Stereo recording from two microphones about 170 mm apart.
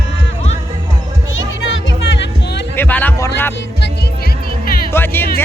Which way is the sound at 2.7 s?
10° left (ahead or behind).